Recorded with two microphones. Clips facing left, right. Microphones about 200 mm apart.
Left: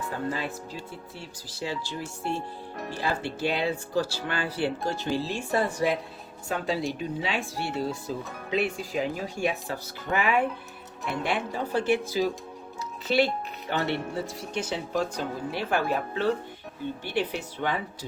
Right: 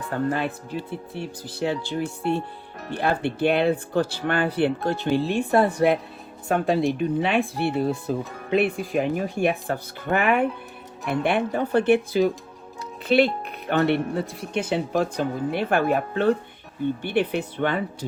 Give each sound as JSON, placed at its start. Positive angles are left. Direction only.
{"t": 0.1, "sound": "speech", "side_deg": -60}